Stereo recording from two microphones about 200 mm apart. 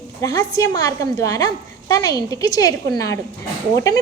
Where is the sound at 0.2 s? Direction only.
20° left (ahead or behind).